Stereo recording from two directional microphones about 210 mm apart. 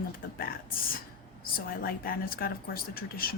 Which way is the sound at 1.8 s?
45° left (ahead or behind).